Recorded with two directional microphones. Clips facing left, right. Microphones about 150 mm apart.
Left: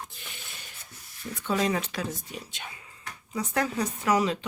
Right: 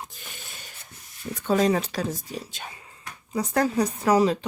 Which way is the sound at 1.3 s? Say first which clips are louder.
Right 5 dB; 40° right (ahead or behind).